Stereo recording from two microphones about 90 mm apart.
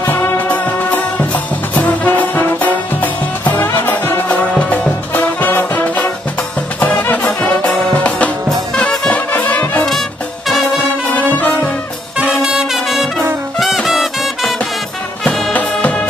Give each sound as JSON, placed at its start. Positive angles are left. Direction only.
{"t": 0.0, "sound": "music", "side_deg": 25}
{"t": 5.1, "sound": "brass instrument", "side_deg": 20}
{"t": 6.8, "sound": "music", "side_deg": 15}
{"t": 11.3, "sound": "brass instrument", "side_deg": 20}
{"t": 12.2, "sound": "music", "side_deg": -10}
{"t": 15.5, "sound": "music", "side_deg": 15}